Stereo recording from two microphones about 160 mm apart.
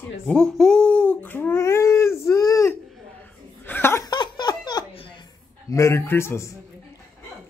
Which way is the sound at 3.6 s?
15° left (ahead or behind).